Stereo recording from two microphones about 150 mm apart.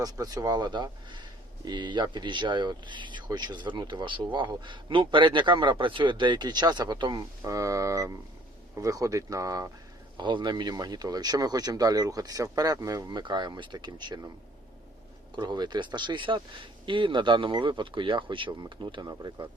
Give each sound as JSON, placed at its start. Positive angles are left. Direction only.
{"t": 0.0, "sound": "speech", "side_deg": -25}
{"t": 15.4, "sound": "speech", "side_deg": -30}